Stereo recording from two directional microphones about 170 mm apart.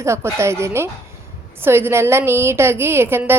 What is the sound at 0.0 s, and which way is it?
A woman's voice, 15° right (ahead or behind).